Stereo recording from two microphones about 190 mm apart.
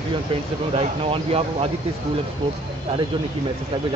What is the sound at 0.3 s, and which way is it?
Speech, 25° right (ahead or behind).